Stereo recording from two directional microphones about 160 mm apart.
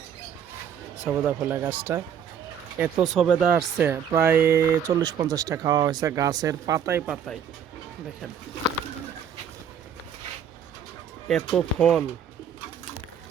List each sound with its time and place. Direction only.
1.0 s speech: 10° right (ahead or behind)
3.1 s speech: centre (ahead or behind)
3.4 s speech: 15° right (ahead or behind)
11.3 s speech: 5° left (ahead or behind)